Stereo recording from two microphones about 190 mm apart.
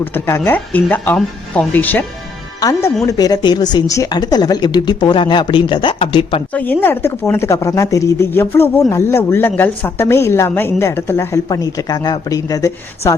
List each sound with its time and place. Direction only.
0.0 s a woman's voice: 10° left (ahead or behind); by 6.4 s 30° left (ahead or behind)
6.5 s speech: 10° left (ahead or behind)